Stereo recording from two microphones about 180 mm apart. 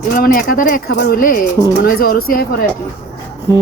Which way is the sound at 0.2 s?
50° left (ahead or behind).